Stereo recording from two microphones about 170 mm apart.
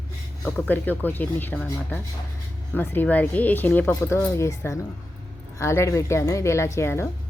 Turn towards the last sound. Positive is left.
turn(degrees=15)  # may be behind; listen again after turning